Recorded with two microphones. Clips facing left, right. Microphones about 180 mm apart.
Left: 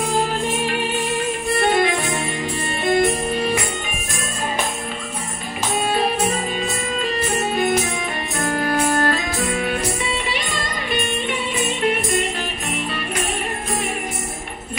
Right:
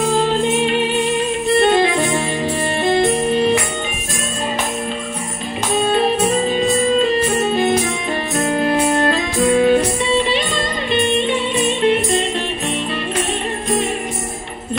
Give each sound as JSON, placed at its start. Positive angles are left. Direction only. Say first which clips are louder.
{"t": 0.6, "sound": "music", "louder": "right 6 dB", "side_deg": -25}
{"t": 7.3, "sound": "music", "louder": "right 4 dB", "side_deg": -25}